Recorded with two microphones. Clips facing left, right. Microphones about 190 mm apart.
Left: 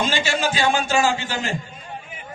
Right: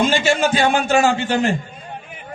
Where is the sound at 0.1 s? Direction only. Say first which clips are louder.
Right 6 dB; 55° right (ahead or behind).